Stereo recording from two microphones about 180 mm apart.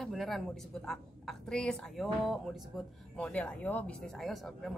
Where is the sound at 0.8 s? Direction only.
Centre (ahead or behind).